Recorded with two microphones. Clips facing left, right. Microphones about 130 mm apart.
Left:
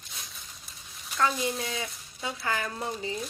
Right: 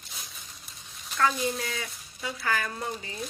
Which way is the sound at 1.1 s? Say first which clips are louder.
Right 1 dB; 20° left (ahead or behind).